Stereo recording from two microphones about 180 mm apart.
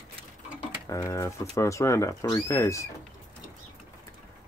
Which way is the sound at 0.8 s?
15° left (ahead or behind).